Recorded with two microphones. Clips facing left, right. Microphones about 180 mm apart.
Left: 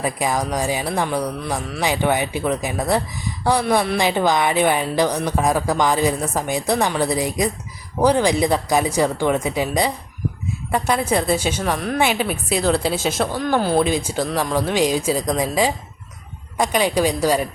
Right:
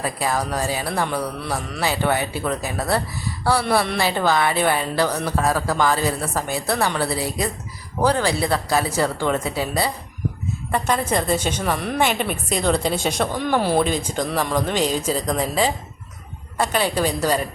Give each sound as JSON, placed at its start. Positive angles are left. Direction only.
{"t": 0.0, "sound": "speech", "side_deg": 15}
{"t": 3.6, "sound": "a woman's voice", "side_deg": 0}
{"t": 3.9, "sound": "a woman's voice", "side_deg": 15}